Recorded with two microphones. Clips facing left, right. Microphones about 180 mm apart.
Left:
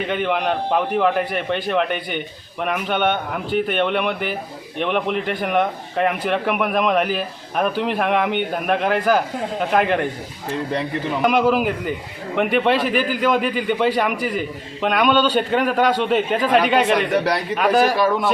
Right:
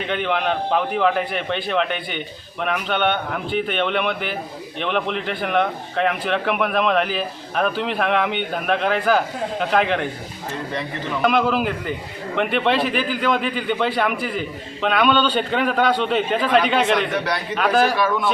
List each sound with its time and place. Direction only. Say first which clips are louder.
0.1 s a man's voice: even; 5° left (ahead or behind)
11.2 s a man's voice: left 2 dB; 10° left (ahead or behind)
17.1 s a man's voice: left 4 dB; 35° left (ahead or behind)
17.5 s a man's voice: left 1 dB; 10° left (ahead or behind)